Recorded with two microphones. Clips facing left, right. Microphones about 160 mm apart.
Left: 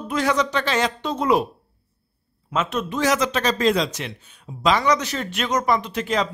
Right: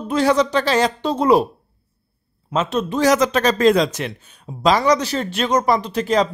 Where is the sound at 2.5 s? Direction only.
30° right (ahead or behind); by 4.1 s 50° right (ahead or behind).